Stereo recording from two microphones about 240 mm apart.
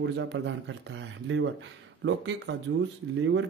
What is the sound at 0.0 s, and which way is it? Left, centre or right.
Speech, right.